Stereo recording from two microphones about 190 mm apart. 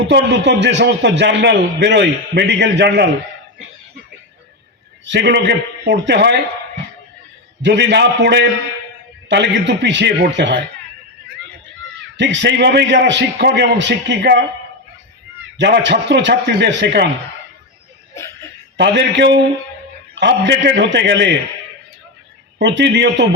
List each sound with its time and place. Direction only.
0.1 s a man's voice: 70° right (ahead or behind)
5.0 s speech: 65° right (ahead or behind)
7.6 s a man's voice: 65° right (ahead or behind)
12.1 s a man's voice: 70° right (ahead or behind)
15.5 s speech: 70° right (ahead or behind)
18.8 s a man's voice: 65° right (ahead or behind)
22.5 s a man's voice: 65° right (ahead or behind)